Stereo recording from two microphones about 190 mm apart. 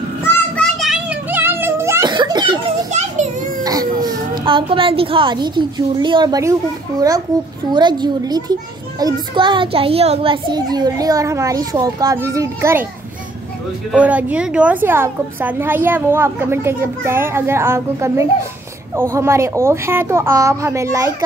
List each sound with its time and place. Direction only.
0.6 s music: centre (ahead or behind); by 2.6 s 20° right (ahead or behind)
2.9 s children playing: 40° right (ahead or behind)
3.6 s a woman's voice: 20° right (ahead or behind)
7.7 s a child's voice: 25° right (ahead or behind)
13.9 s a woman's voice: 5° right (ahead or behind)